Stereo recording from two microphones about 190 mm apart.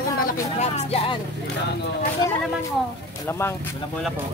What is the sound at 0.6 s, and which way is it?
Speech, 35° left (ahead or behind).